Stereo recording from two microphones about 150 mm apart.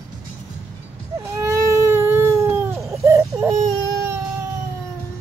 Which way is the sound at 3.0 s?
20° right (ahead or behind).